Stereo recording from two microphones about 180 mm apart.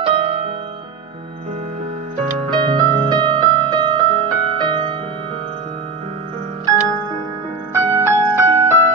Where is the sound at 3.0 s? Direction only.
25° right (ahead or behind).